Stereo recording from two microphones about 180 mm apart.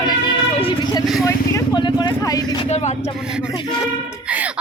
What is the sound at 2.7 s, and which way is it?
Speech, 40° left (ahead or behind).